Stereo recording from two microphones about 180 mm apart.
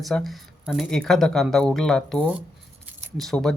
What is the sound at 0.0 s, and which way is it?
Speech, centre (ahead or behind).